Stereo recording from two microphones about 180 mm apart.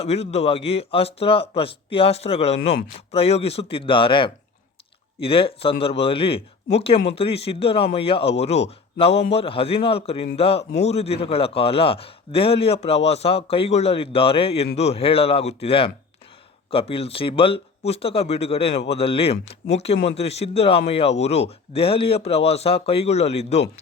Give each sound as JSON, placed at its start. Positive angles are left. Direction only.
{"t": 0.0, "sound": "a man's voice", "side_deg": 35}
{"t": 10.6, "sound": "a man's voice", "side_deg": 70}
{"t": 10.8, "sound": "a man's voice", "side_deg": 35}